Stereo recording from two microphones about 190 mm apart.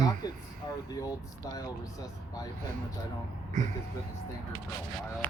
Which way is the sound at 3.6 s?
40° right (ahead or behind).